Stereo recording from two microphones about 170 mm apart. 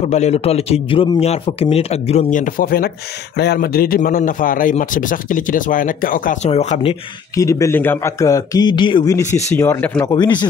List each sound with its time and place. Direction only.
0.0 s a man's voice: 40° left (ahead or behind); by 2.9 s 60° left (ahead or behind)
3.3 s a man's voice: 70° left (ahead or behind); by 6.5 s 55° left (ahead or behind)
6.5 s a man's voice: 40° left (ahead or behind)
7.3 s a man's voice: 20° left (ahead or behind)
9.9 s a man's voice: 25° left (ahead or behind)